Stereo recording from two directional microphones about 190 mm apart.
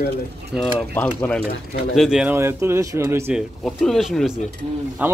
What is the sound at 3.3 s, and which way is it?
Speech, centre (ahead or behind).